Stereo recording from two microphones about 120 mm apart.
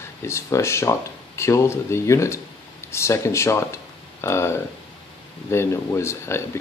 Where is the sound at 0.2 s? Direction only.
25° left (ahead or behind).